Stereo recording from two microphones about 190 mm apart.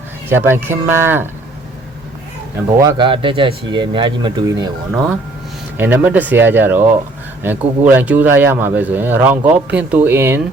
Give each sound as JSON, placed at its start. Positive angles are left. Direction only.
{"t": 0.3, "sound": "speech", "side_deg": -10}
{"t": 2.8, "sound": "speech", "side_deg": -25}